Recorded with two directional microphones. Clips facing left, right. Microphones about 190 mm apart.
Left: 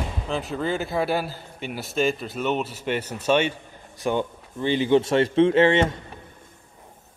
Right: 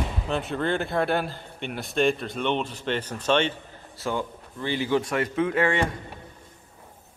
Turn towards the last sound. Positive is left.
turn(degrees=25)  # may be behind; listen again after turning